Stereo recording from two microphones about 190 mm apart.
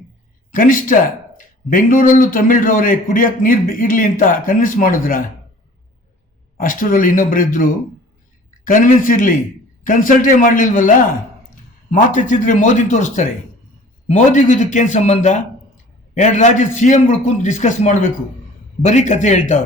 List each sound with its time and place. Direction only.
0.5 s speech: 45° left (ahead or behind)
6.6 s a man's voice: 45° left (ahead or behind)